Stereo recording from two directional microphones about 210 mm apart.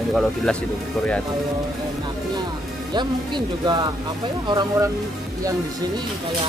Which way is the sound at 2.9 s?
20° right (ahead or behind).